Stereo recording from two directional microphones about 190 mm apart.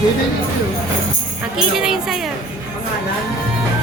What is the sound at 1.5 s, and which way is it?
Speech, 5° right (ahead or behind).